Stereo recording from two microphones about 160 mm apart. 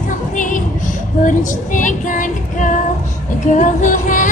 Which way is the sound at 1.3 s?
55° left (ahead or behind).